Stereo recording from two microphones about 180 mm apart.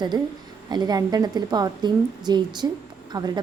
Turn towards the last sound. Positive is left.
turn(degrees=-20)  # may be behind; listen again after turning